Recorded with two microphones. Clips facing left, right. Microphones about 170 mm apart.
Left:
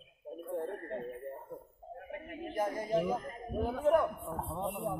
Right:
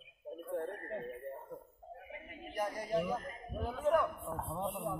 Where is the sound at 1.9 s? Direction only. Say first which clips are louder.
Left 9 dB; 50° left (ahead or behind).